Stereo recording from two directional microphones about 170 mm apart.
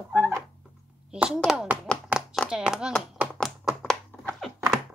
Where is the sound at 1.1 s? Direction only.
5° right (ahead or behind).